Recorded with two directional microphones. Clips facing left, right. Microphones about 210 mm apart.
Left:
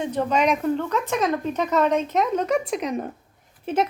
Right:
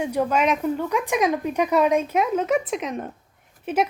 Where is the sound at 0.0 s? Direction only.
10° right (ahead or behind).